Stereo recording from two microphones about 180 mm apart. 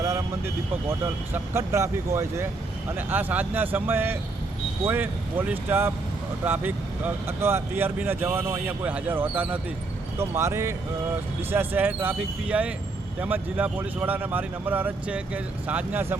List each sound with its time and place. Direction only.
0.0 s speech: 15° right (ahead or behind)